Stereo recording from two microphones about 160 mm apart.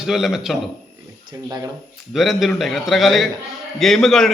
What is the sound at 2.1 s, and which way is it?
A man's voice, centre (ahead or behind).